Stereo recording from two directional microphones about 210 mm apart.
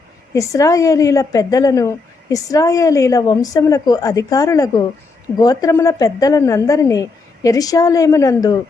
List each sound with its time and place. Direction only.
0.3 s a woman's voice: 15° left (ahead or behind)